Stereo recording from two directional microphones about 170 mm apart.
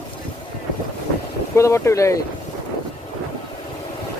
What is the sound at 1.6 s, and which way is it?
Speech, 15° left (ahead or behind).